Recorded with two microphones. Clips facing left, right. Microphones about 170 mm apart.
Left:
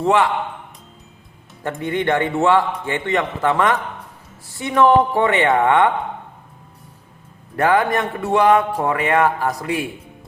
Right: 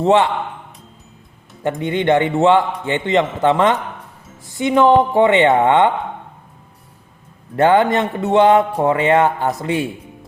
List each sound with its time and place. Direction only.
0.0 s speech: 25° right (ahead or behind)
1.6 s speech: 20° right (ahead or behind)
7.5 s speech: 25° right (ahead or behind)